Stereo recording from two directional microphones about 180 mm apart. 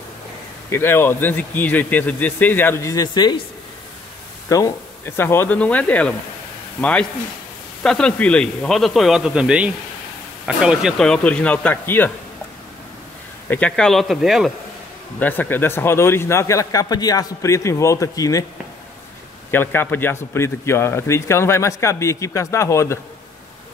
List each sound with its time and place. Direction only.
0.7 s a man's voice: 15° left (ahead or behind)
4.5 s a man's voice: 15° left (ahead or behind)
13.5 s speech: 5° left (ahead or behind)
15.1 s a man's voice: 10° left (ahead or behind)
19.5 s a man's voice: 10° left (ahead or behind)